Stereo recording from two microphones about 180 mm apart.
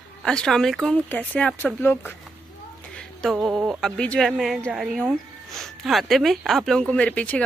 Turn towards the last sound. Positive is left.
turn(degrees=5)  # may be behind; listen again after turning